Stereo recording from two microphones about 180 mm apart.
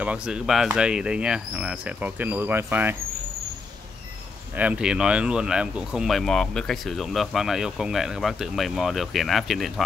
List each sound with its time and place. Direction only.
0.0 s speech: 5° right (ahead or behind)
4.6 s speech: 5° right (ahead or behind)